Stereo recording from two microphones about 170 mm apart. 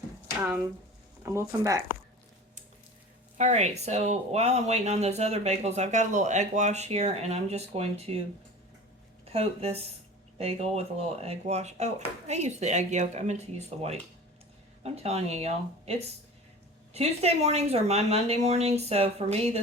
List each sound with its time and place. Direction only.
1.2 s speech: 15° right (ahead or behind)
3.3 s speech: 45° right (ahead or behind)
9.3 s speech: 35° right (ahead or behind)